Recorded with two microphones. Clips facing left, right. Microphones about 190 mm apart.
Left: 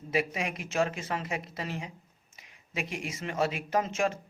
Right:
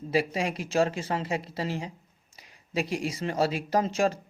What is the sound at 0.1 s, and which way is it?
A man's voice, 30° right (ahead or behind).